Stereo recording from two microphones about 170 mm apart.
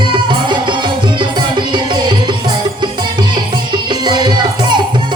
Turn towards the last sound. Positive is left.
turn(degrees=-25)  # may be behind; listen again after turning